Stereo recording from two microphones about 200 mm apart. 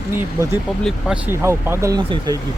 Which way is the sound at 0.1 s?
10° right (ahead or behind).